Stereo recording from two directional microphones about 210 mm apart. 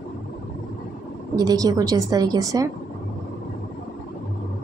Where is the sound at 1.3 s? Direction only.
15° right (ahead or behind).